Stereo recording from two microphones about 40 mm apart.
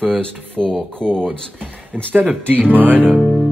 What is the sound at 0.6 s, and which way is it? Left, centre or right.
Speech, left.